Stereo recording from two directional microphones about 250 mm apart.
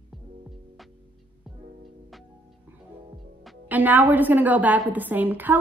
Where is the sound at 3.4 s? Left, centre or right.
Centre.